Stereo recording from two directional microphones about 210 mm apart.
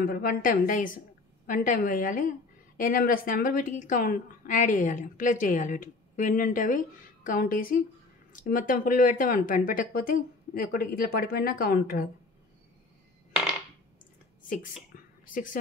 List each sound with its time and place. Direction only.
0.0 s a woman's voice: 45° left (ahead or behind)
14.4 s a sound: 40° left (ahead or behind)
15.2 s a woman's voice: 40° left (ahead or behind)